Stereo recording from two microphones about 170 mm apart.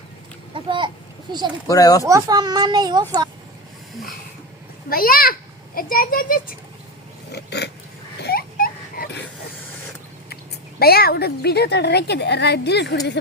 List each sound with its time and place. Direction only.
0.5 s speech: 30° right (ahead or behind)
1.6 s speech: 20° left (ahead or behind)
2.0 s speech: 20° right (ahead or behind)
4.9 s a child's voice: 60° left (ahead or behind)
7.3 s dog: 75° left (ahead or behind)
8.2 s a sound: 65° left (ahead or behind)
10.8 s a woman's voice: 65° left (ahead or behind); by 13.0 s 85° left